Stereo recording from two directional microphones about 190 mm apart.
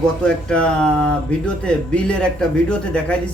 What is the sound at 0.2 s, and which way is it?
A man's voice, 5° left (ahead or behind).